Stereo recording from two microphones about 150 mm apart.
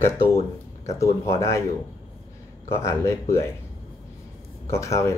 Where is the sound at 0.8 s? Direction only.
20° left (ahead or behind).